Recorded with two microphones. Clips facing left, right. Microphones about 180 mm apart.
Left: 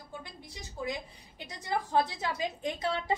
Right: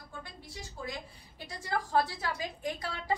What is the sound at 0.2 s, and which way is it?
A woman's voice, 20° left (ahead or behind).